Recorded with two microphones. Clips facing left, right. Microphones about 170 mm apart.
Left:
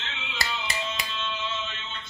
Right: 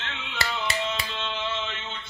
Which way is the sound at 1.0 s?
60° right (ahead or behind).